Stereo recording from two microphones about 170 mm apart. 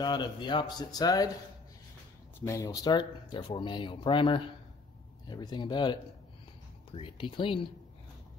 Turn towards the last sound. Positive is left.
turn(degrees=30)  # may be behind; listen again after turning